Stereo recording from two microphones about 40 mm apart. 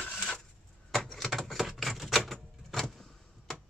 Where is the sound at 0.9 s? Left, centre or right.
Centre.